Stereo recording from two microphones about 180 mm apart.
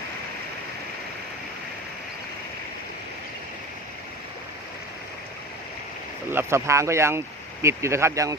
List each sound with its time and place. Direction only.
6.3 s speech: 15° right (ahead or behind)